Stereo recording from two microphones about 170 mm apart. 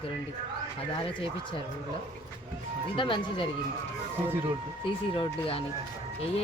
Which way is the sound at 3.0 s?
30° left (ahead or behind).